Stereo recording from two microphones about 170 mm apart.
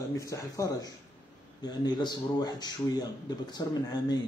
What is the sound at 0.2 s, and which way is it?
Speech, 20° left (ahead or behind).